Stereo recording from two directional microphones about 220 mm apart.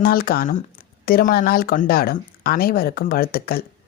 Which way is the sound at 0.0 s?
40° left (ahead or behind).